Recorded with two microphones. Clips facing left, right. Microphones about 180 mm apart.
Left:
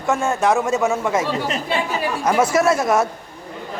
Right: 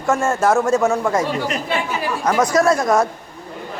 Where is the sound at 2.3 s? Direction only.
5° left (ahead or behind).